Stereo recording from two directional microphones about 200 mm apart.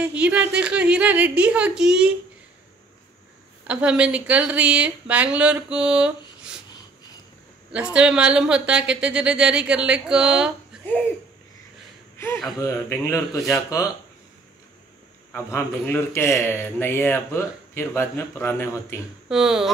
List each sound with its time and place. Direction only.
0.0 s speech: 5° right (ahead or behind)
3.6 s speech: 5° right (ahead or behind)
7.7 s speech: 5° right (ahead or behind)
12.2 s a man's voice: 15° left (ahead or behind)
15.3 s a man's voice: 10° left (ahead or behind)
19.2 s speech: centre (ahead or behind)